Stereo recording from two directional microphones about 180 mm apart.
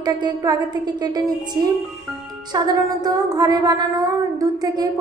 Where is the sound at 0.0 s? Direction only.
20° right (ahead or behind).